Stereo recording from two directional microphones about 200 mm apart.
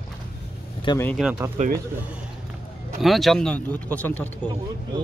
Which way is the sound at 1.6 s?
35° right (ahead or behind).